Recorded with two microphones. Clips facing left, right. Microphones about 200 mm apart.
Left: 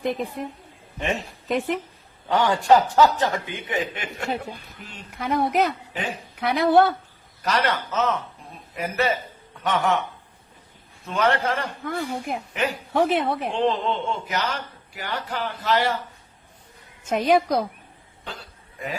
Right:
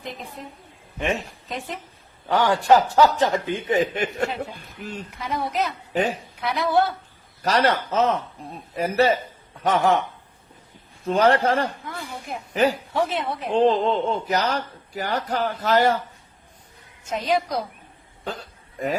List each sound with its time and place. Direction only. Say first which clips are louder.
0.0 s a woman's voice: left 9 dB; 60° left (ahead or behind)
0.9 s a man's voice: right 2 dB; centre (ahead or behind)
1.5 s a woman's voice: left 10 dB; 60° left (ahead or behind)
2.9 s speech: right 1 dB; 20° right (ahead or behind)
3.5 s speech: right 6 dB; 40° right (ahead or behind)
5.1 s a woman's voice: left 5 dB; 60° left (ahead or behind)
5.9 s a woman's voice: right 7 dB; 40° right (ahead or behind)
6.4 s a woman's voice: left 4 dB; 60° left (ahead or behind)
7.4 s speech: right 3 dB; 35° right (ahead or behind)
11.0 s speech: right 4 dB; 35° right (ahead or behind)
12.9 s a woman's voice: left 3 dB; 60° left (ahead or behind)
13.5 s speech: right 8 dB; 35° right (ahead or behind)
17.1 s a woman's voice: left 4 dB; 55° left (ahead or behind)
18.3 s cough: right 6 dB; 40° right (ahead or behind)